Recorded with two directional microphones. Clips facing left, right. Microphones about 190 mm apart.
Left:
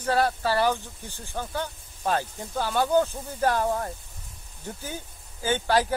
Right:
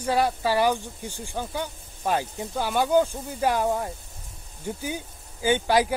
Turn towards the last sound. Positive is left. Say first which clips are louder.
# right 2 dB
turn(degrees=-15)  # may be behind; listen again after turning